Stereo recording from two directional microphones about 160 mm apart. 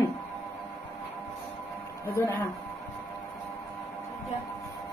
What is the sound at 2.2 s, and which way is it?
Speech, 20° left (ahead or behind).